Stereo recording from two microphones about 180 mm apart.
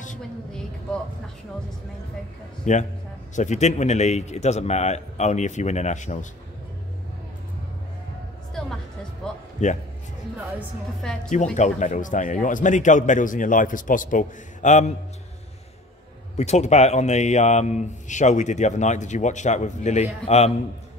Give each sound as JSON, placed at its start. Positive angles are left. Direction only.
{"t": 2.6, "sound": "speech", "side_deg": 40}
{"t": 8.6, "sound": "music", "side_deg": 0}
{"t": 9.6, "sound": "a man's voice", "side_deg": 40}
{"t": 11.1, "sound": "speech", "side_deg": 5}
{"t": 11.5, "sound": "a man's voice", "side_deg": 40}
{"t": 16.3, "sound": "speech", "side_deg": 40}